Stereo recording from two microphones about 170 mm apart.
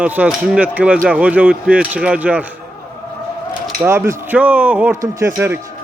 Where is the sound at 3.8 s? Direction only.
15° right (ahead or behind).